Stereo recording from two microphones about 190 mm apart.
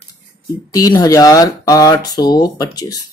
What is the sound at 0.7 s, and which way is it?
Speech, 20° left (ahead or behind).